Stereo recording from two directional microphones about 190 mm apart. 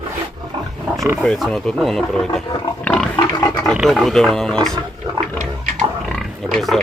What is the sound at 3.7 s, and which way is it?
Speech, centre (ahead or behind).